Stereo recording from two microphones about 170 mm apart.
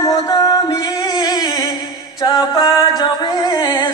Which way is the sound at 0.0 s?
20° left (ahead or behind).